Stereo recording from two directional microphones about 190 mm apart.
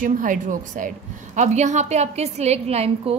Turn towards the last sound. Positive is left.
turn(degrees=-35)  # may be behind; listen again after turning